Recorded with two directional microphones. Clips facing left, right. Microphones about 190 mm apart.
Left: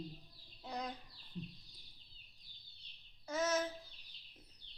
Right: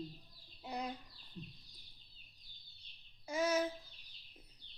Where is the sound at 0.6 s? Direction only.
10° right (ahead or behind).